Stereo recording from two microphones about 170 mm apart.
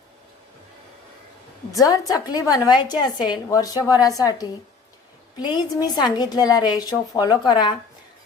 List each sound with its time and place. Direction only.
1.7 s a woman's voice: 20° left (ahead or behind)